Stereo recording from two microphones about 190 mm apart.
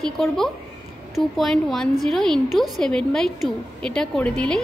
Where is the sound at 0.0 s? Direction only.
Centre (ahead or behind).